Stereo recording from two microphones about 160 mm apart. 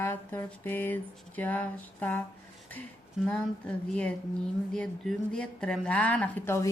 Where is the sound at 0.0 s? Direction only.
15° left (ahead or behind).